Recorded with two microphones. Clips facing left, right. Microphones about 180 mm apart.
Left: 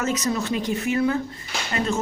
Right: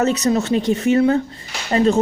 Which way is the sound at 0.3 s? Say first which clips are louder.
Right 8 dB; 45° right (ahead or behind).